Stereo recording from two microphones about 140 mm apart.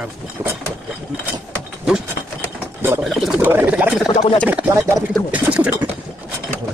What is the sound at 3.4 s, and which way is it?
Speech, 10° right (ahead or behind).